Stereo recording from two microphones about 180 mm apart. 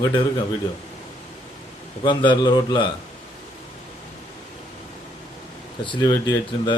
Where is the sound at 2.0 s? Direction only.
25° left (ahead or behind).